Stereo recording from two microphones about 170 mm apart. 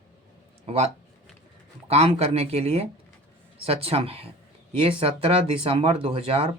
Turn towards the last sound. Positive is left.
turn(degrees=-35)  # may be behind; listen again after turning